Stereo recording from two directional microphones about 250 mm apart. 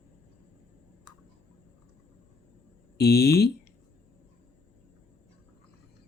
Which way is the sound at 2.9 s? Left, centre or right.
Left.